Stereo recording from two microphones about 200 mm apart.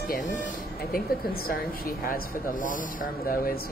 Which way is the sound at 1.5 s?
45° left (ahead or behind).